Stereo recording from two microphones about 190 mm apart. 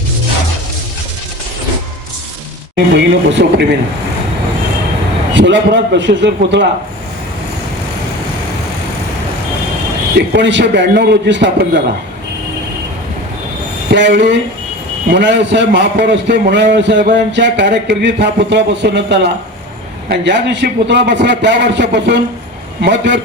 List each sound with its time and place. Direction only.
2.7 s a man's voice: 65° right (ahead or behind)
5.3 s a man's voice: 70° right (ahead or behind)
10.2 s a man's voice: 65° right (ahead or behind)
13.9 s a man's voice: 70° right (ahead or behind)